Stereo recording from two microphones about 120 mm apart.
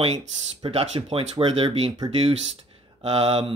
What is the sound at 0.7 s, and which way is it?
Speech, 55° right (ahead or behind).